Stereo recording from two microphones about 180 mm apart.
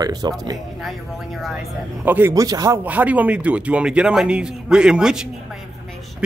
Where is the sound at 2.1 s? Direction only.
10° right (ahead or behind).